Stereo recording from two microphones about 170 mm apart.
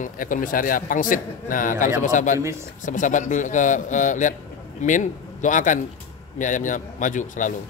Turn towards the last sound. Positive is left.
turn(degrees=50)  # may be behind; listen again after turning